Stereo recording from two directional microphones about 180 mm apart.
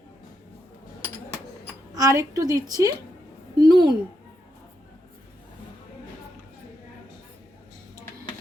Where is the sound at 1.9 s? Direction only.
20° right (ahead or behind).